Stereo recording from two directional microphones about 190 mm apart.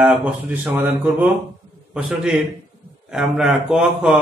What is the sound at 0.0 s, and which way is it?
A man's voice, 10° right (ahead or behind).